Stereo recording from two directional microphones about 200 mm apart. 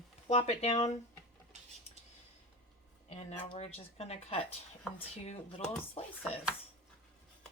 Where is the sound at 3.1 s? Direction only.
35° left (ahead or behind).